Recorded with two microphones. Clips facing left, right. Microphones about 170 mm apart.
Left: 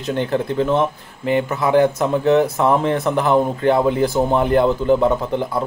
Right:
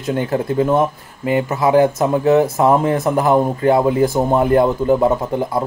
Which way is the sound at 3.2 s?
40° right (ahead or behind).